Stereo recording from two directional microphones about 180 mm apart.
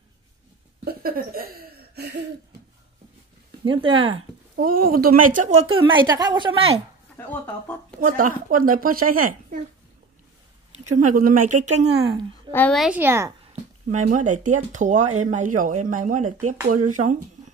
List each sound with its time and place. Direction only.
0.8 s a sound: 55° right (ahead or behind)
3.6 s speech: 30° right (ahead or behind)
4.6 s speech: 55° right (ahead or behind)
5.7 s speech: 25° right (ahead or behind)
7.2 s speech: 10° left (ahead or behind)
8.2 s speech: 50° right (ahead or behind)
11.0 s speech: 45° right (ahead or behind)
12.4 s a sound: 10° left (ahead or behind)
12.7 s speech: centre (ahead or behind)
13.0 s speech: 15° right (ahead or behind)
13.5 s speech: 45° right (ahead or behind)